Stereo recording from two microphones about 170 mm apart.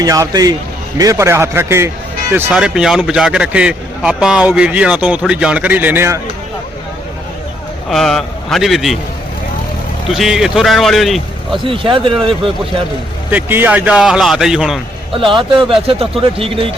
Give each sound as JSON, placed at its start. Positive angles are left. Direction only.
{"t": 0.0, "sound": "a man's voice", "side_deg": -20}
{"t": 7.9, "sound": "a man's voice", "side_deg": 0}
{"t": 10.1, "sound": "a man's voice", "side_deg": 0}
{"t": 11.6, "sound": "speech", "side_deg": -30}
{"t": 13.3, "sound": "a man's voice", "side_deg": -10}
{"t": 15.1, "sound": "speech", "side_deg": -30}